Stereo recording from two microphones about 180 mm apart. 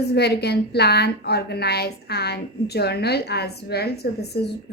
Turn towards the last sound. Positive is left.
turn(degrees=65)  # may be behind; listen again after turning